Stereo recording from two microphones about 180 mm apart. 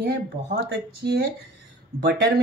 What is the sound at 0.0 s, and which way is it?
Speech, 60° right (ahead or behind).